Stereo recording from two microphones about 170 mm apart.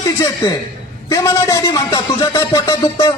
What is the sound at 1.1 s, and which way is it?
A man's voice, 20° left (ahead or behind).